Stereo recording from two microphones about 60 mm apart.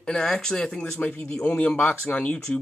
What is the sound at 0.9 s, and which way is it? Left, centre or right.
Speech, left.